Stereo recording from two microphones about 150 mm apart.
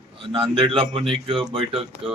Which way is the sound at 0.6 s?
40° right (ahead or behind).